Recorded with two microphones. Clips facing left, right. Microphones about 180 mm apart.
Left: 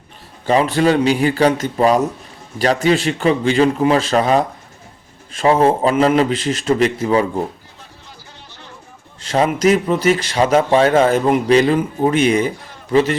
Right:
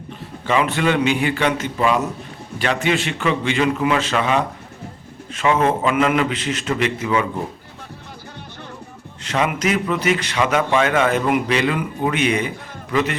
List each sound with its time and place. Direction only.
0.4 s speech: 35° left (ahead or behind)
9.2 s speech: 35° left (ahead or behind)